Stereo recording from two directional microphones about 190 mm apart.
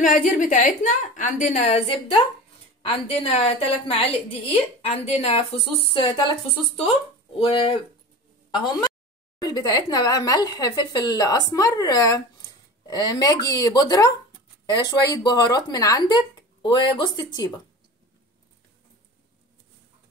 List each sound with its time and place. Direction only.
0.0 s a woman's voice: 45° left (ahead or behind); by 17.5 s 20° left (ahead or behind)